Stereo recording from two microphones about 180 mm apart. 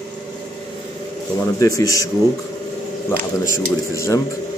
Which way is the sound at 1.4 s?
20° left (ahead or behind).